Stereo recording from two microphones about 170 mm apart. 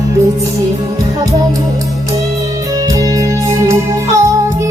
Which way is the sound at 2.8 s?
20° right (ahead or behind).